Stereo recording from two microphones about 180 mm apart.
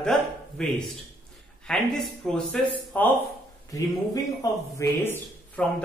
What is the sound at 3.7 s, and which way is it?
Speech, 20° left (ahead or behind).